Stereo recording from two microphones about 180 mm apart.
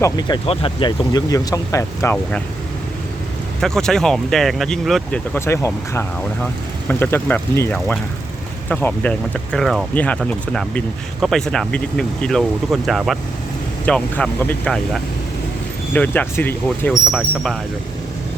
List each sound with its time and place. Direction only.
0.0 s speech: 25° left (ahead or behind)
3.6 s speech: 5° left (ahead or behind)
16.9 s speech: 5° right (ahead or behind)